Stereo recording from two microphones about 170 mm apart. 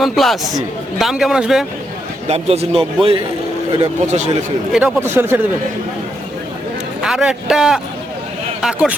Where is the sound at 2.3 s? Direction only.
35° right (ahead or behind).